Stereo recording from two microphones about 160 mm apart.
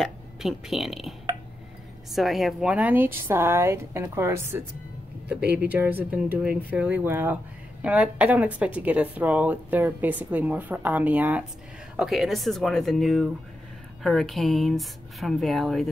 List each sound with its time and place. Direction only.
0.0 s a woman's voice: centre (ahead or behind)